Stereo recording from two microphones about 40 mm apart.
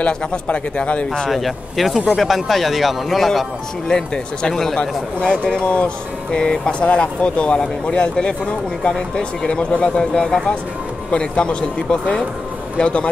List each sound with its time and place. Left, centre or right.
0.0 s speech: left
1.3 s speech: centre
3.9 s speech: centre